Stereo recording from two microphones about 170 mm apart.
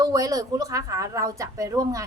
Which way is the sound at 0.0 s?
20° right (ahead or behind).